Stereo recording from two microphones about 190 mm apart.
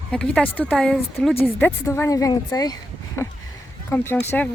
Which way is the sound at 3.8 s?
10° left (ahead or behind).